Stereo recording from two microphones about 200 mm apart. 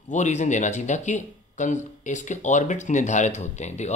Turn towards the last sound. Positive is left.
turn(degrees=35)  # may be behind; listen again after turning